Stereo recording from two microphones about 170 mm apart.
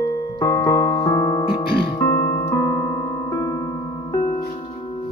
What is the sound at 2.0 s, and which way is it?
Keyboard, 10° left (ahead or behind).